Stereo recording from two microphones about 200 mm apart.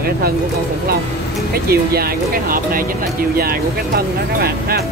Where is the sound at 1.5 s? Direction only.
50° right (ahead or behind).